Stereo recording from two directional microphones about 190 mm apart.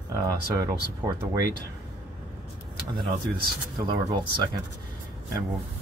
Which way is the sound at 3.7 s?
20° right (ahead or behind).